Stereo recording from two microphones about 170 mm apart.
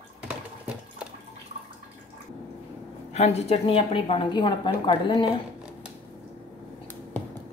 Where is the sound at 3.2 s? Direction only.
40° left (ahead or behind).